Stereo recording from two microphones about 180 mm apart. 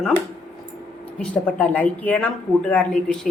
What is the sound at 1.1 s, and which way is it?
A woman's voice, 10° left (ahead or behind).